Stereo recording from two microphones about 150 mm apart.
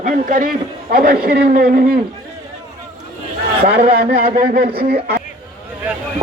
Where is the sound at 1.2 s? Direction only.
90° right.